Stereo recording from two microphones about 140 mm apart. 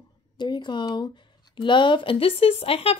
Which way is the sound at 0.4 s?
30° left (ahead or behind).